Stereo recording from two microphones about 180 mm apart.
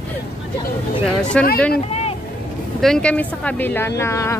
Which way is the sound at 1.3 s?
5° left (ahead or behind).